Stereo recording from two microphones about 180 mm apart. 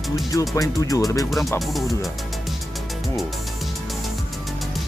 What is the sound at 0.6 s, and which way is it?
Speech, 20° left (ahead or behind).